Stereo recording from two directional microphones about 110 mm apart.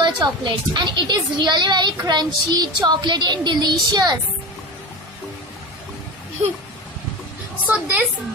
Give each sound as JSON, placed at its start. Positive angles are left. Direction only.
{"t": 0.0, "sound": "a woman's voice", "side_deg": -40}
{"t": 7.6, "sound": "a woman's voice", "side_deg": -15}